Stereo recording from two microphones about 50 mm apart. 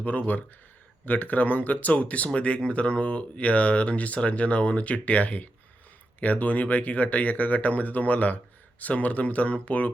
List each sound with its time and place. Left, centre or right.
0.0 s speech: left